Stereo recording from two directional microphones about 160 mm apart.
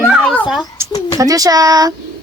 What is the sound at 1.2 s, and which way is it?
Speech, 20° right (ahead or behind).